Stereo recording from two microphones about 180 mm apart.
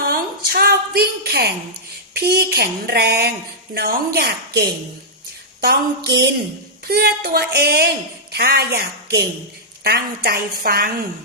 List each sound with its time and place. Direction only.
0.0 s a sound: 55° right (ahead or behind)
2.1 s speech: 60° right (ahead or behind)
6.8 s a woman's voice: 60° right (ahead or behind)